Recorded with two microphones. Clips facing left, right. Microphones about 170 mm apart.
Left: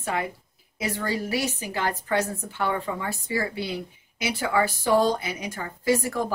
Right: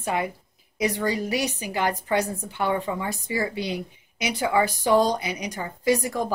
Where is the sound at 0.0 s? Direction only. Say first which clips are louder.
Right 2 dB; 15° right (ahead or behind).